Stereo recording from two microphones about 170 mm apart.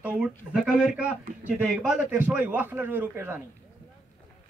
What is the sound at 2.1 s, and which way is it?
A man's voice, 10° right (ahead or behind).